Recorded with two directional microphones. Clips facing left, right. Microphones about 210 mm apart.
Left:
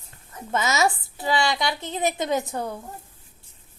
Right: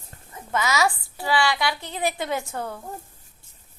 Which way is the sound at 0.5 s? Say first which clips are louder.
Left 1 dB; 25° left (ahead or behind).